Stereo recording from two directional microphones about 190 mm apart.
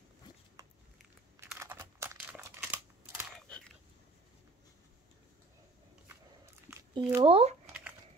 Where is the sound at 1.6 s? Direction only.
15° right (ahead or behind).